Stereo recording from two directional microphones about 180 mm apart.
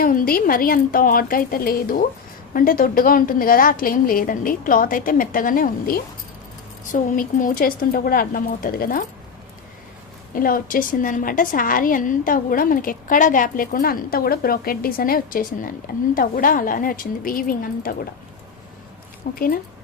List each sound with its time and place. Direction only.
0.0 s a woman's voice: 50° left (ahead or behind)
10.3 s a woman's voice: 50° left (ahead or behind)
19.3 s a woman's voice: 50° left (ahead or behind)